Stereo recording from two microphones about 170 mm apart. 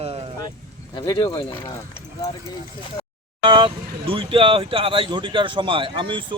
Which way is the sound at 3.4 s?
30° right (ahead or behind).